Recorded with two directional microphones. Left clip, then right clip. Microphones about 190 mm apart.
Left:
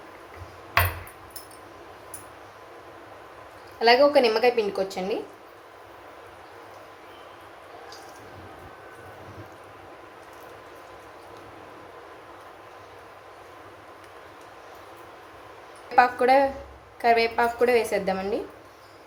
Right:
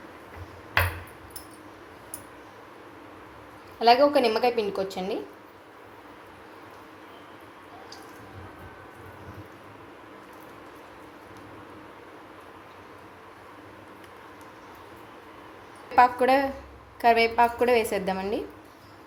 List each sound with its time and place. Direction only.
3.8 s a woman's voice: 10° right (ahead or behind)
16.0 s a woman's voice: 15° right (ahead or behind)